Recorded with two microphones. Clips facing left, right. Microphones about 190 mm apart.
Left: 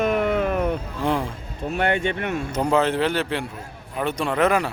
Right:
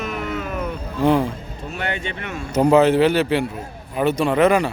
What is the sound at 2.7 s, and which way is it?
A man's voice, 5° right (ahead or behind).